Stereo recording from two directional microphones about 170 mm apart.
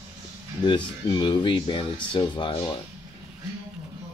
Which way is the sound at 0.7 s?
25° left (ahead or behind).